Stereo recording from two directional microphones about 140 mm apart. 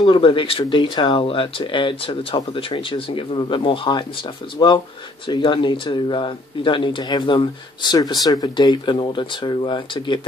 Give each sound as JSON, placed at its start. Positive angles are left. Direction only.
{"t": 0.0, "sound": "speech", "side_deg": 35}